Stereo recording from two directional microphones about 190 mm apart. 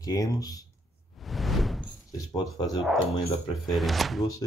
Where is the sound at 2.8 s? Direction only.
Centre (ahead or behind).